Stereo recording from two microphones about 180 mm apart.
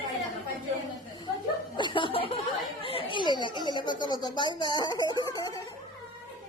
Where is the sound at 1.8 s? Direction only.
30° left (ahead or behind).